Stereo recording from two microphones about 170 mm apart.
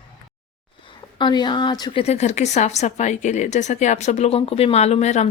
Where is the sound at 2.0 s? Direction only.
40° left (ahead or behind).